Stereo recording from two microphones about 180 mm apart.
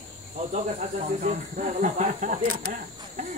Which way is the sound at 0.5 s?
40° right (ahead or behind).